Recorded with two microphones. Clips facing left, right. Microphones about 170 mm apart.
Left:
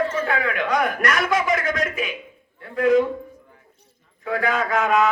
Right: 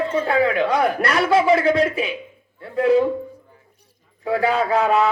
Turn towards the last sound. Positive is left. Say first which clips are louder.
# right 2 dB
turn(degrees=-30)  # may be behind; listen again after turning